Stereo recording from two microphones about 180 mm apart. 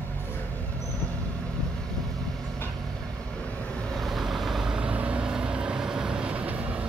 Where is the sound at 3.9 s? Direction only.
Centre (ahead or behind).